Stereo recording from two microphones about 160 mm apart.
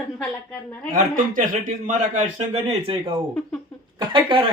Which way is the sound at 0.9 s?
55° right (ahead or behind).